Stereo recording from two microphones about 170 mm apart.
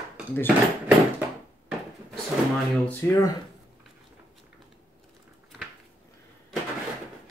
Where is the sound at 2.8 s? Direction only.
15° left (ahead or behind).